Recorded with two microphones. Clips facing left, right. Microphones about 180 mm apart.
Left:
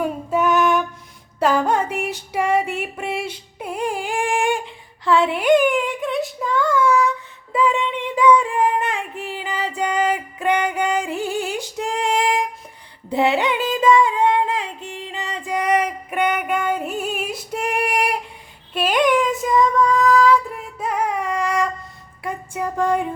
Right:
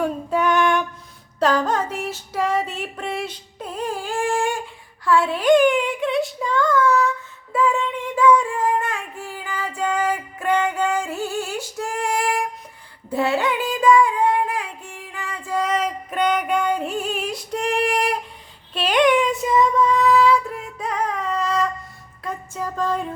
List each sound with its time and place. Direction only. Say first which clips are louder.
0.0 s music: left 1 dB; 5° left (ahead or behind)
1.4 s female singing: left 1 dB; 10° left (ahead or behind)
13.1 s singing: left 2 dB; 20° left (ahead or behind)
15.1 s female singing: even; 20° left (ahead or behind)
18.7 s child singing: even; 5° left (ahead or behind)
20.7 s music: left 3 dB; 5° left (ahead or behind)